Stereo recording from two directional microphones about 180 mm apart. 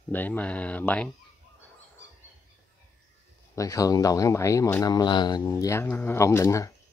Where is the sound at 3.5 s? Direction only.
20° left (ahead or behind).